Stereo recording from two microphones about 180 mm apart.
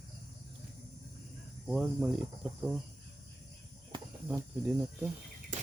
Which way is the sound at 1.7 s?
Centre (ahead or behind).